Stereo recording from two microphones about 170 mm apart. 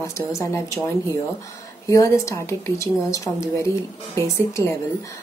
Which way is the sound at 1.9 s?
20° left (ahead or behind).